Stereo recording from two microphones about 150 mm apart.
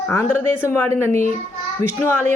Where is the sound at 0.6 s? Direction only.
15° left (ahead or behind).